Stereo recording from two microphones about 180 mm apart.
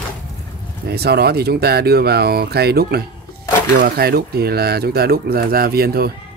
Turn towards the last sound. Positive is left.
turn(degrees=-60)  # may be behind; listen again after turning